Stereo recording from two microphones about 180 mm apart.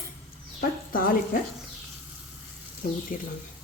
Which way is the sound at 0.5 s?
50° left (ahead or behind).